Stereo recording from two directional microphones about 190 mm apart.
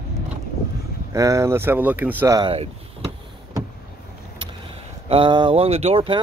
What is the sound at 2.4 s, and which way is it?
Speech, 25° right (ahead or behind).